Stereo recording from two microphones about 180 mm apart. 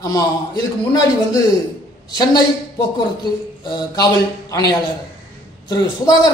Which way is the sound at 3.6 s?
20° left (ahead or behind).